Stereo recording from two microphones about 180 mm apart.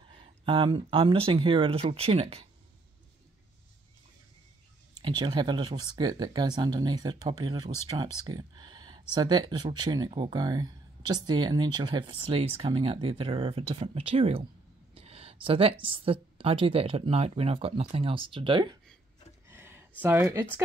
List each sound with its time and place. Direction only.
0.5 s speech: 30° right (ahead or behind)
5.0 s speech: 25° right (ahead or behind)
15.0 s a sound: 35° right (ahead or behind)
15.8 s speech: 30° right (ahead or behind)
19.5 s a sound: 15° right (ahead or behind)
20.0 s speech: 15° right (ahead or behind)